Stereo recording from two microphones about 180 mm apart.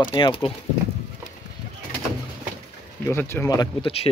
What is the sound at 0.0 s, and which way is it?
Speech, 30° left (ahead or behind).